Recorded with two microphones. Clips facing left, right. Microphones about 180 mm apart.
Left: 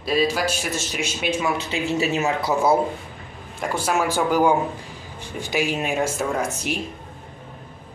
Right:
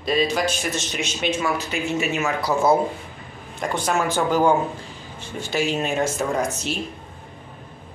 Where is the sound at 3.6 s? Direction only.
5° left (ahead or behind).